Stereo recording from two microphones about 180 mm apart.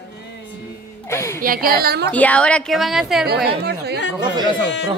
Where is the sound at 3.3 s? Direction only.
60° right (ahead or behind).